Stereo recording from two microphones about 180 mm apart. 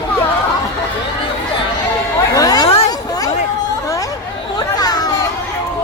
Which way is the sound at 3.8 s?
20° left (ahead or behind).